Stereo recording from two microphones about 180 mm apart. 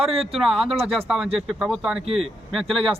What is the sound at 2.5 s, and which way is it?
Speech, centre (ahead or behind).